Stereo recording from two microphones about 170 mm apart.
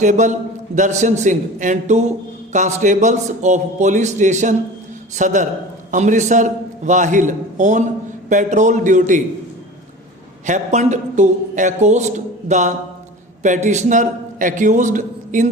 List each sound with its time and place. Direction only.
0.0 s speech: 45° right (ahead or behind)
10.4 s speech: 45° right (ahead or behind)